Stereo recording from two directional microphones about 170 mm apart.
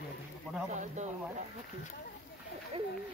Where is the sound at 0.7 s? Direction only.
45° right (ahead or behind).